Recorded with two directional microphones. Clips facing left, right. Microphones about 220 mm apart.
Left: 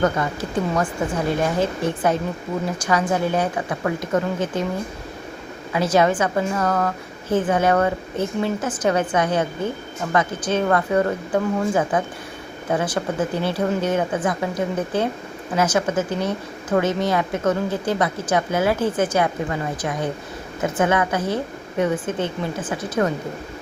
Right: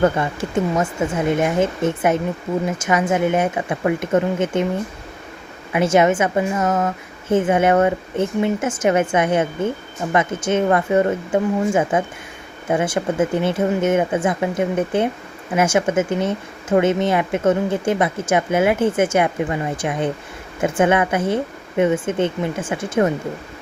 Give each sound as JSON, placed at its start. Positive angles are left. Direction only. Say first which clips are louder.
{"t": 0.0, "sound": "a woman's voice", "louder": "right 3 dB", "side_deg": -25}
{"t": 5.7, "sound": "a woman's voice", "louder": "right 3 dB", "side_deg": -25}